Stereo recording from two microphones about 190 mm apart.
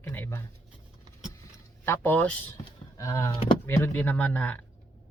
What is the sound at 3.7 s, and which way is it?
Speech, 10° left (ahead or behind).